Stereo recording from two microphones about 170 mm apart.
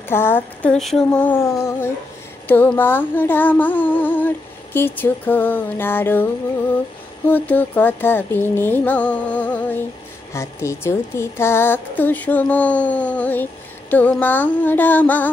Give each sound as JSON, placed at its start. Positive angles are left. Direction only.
{"t": 0.1, "sound": "a woman's voice", "side_deg": 15}
{"t": 7.2, "sound": "a woman's voice", "side_deg": 10}